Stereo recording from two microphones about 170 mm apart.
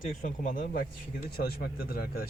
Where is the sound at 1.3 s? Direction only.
65° left (ahead or behind).